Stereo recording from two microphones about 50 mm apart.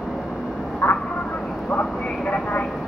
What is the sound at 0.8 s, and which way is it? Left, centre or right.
Vehicle, left.